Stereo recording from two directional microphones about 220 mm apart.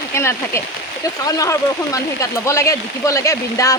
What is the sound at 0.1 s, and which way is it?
Speech, 10° left (ahead or behind).